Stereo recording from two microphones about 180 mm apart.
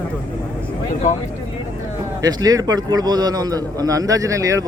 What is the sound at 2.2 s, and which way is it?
A man's voice, 20° right (ahead or behind).